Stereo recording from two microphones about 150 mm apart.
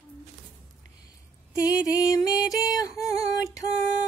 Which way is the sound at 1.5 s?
25° left (ahead or behind).